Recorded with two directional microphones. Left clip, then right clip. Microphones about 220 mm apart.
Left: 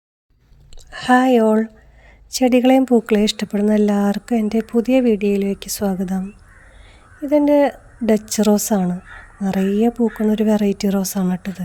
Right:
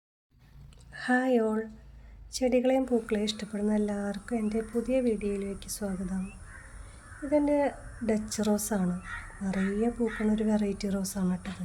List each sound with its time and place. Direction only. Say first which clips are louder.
0.9 s speech: left 13 dB; 35° left (ahead or behind)
7.3 s speech: left 12 dB; 40° left (ahead or behind)